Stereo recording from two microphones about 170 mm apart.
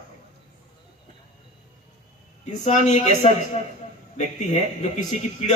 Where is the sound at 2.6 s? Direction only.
45° left (ahead or behind).